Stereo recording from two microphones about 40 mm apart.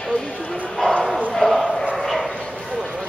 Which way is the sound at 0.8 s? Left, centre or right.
Centre.